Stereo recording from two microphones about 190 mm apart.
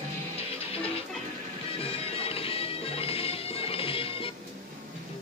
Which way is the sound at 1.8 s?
30° left (ahead or behind).